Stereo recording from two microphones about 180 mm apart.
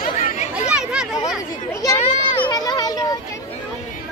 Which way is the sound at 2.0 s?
25° left (ahead or behind).